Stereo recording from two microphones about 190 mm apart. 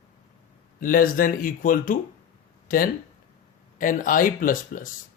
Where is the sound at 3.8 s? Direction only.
45° left (ahead or behind).